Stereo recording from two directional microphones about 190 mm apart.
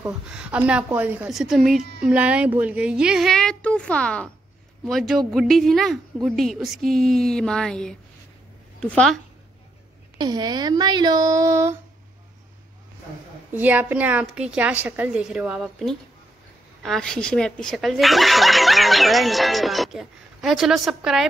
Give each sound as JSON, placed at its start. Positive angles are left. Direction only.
{"t": 0.0, "sound": "a woman's voice", "side_deg": -5}
{"t": 10.1, "sound": "speech", "side_deg": -20}
{"t": 13.5, "sound": "a woman's voice", "side_deg": -10}